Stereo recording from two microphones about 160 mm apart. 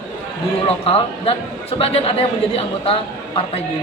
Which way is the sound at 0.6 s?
40° left (ahead or behind).